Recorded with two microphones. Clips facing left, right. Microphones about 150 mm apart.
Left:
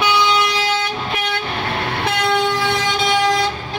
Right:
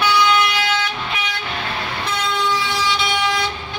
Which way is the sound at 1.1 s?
55° left (ahead or behind).